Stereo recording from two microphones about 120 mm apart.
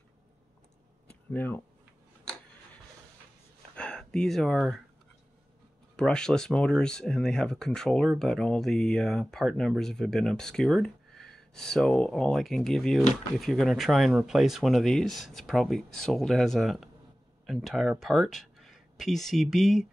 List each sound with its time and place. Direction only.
1.3 s speech: 15° left (ahead or behind)
3.7 s speech: 5° left (ahead or behind)
5.9 s speech: 5° left (ahead or behind)